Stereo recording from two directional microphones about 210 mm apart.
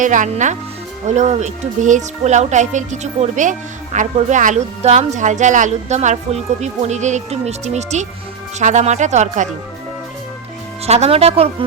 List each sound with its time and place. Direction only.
0.0 s speech: 35° right (ahead or behind)
10.8 s speech: 30° right (ahead or behind)